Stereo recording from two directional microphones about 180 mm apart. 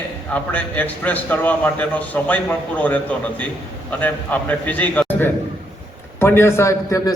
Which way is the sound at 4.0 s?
10° left (ahead or behind).